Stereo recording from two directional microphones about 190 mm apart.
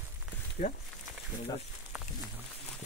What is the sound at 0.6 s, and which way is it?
Speech, 45° left (ahead or behind).